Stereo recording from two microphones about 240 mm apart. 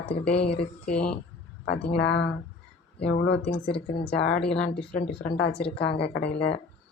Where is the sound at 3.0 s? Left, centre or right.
Left.